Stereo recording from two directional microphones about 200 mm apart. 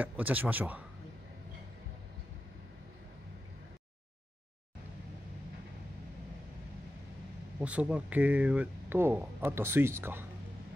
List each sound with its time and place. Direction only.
0.0 s speech: 10° right (ahead or behind)
7.6 s speech: 5° right (ahead or behind)